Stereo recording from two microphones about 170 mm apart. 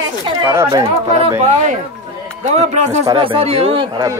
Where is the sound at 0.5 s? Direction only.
15° right (ahead or behind).